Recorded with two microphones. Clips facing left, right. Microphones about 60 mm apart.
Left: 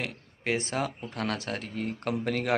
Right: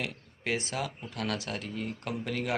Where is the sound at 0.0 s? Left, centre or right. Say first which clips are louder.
Left 2 dB; left.